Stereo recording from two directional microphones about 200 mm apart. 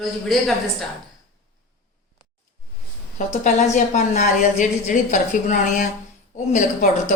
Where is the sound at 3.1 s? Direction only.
35° left (ahead or behind).